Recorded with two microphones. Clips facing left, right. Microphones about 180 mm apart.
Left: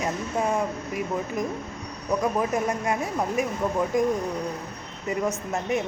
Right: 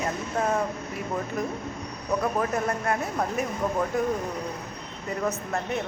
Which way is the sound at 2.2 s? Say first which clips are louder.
Left 2 dB; 15° left (ahead or behind).